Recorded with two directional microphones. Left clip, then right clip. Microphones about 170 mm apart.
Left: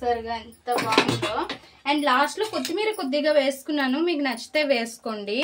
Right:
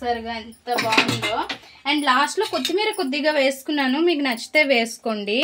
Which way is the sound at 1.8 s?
65° right (ahead or behind).